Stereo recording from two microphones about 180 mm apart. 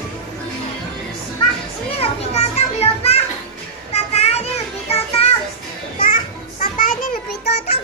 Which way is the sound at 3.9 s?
35° left (ahead or behind).